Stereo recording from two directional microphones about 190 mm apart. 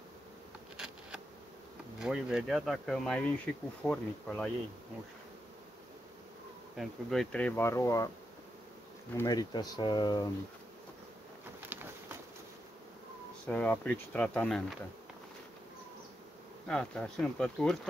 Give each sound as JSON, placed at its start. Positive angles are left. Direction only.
{"t": 2.0, "sound": "speech", "side_deg": -5}
{"t": 6.8, "sound": "speech", "side_deg": 0}
{"t": 9.1, "sound": "speech", "side_deg": 20}
{"t": 13.5, "sound": "speech", "side_deg": 10}
{"t": 16.6, "sound": "speech", "side_deg": 5}